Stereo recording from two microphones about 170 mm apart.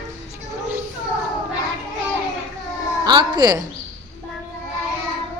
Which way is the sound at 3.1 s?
25° right (ahead or behind).